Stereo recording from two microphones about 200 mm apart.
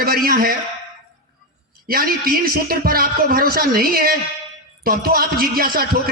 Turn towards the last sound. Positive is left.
turn(degrees=-45)  # may be behind; listen again after turning